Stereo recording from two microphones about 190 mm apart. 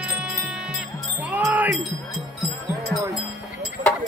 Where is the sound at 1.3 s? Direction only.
10° right (ahead or behind).